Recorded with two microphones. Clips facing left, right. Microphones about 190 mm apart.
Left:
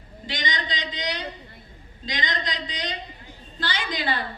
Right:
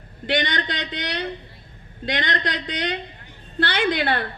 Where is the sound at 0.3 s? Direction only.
65° right (ahead or behind).